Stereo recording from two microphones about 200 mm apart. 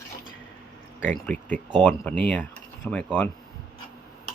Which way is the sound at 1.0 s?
5° left (ahead or behind).